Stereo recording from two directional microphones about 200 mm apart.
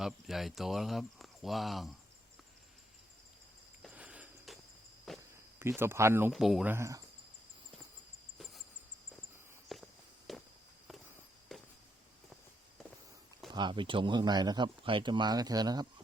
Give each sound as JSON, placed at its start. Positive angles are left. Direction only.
{"t": 0.0, "sound": "speech", "side_deg": 0}
{"t": 3.8, "sound": "a sound", "side_deg": -5}
{"t": 5.1, "sound": "walk", "side_deg": 0}
{"t": 5.5, "sound": "speech", "side_deg": -10}
{"t": 6.3, "sound": "speech", "side_deg": 0}
{"t": 9.7, "sound": "walk", "side_deg": 0}
{"t": 13.5, "sound": "speech", "side_deg": -25}